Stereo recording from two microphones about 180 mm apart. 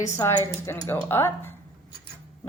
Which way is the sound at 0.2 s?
20° left (ahead or behind).